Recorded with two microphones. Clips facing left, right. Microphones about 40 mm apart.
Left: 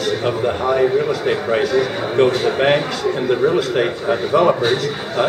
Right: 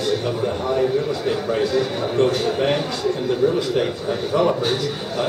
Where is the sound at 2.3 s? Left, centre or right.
Left.